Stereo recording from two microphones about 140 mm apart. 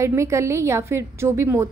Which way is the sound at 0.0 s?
20° right (ahead or behind).